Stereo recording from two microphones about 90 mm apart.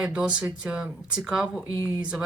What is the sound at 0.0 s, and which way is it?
Speech, 10° right (ahead or behind).